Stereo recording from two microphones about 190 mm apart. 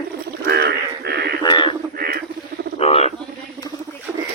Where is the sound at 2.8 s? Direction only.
35° left (ahead or behind).